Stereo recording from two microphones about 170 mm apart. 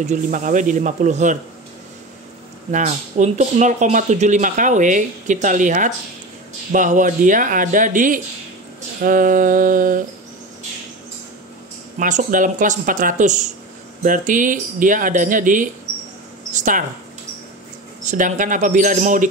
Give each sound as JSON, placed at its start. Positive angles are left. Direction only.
{"t": 0.0, "sound": "speech", "side_deg": -45}
{"t": 2.7, "sound": "speech", "side_deg": -45}
{"t": 12.0, "sound": "speech", "side_deg": -50}
{"t": 18.0, "sound": "speech", "side_deg": -50}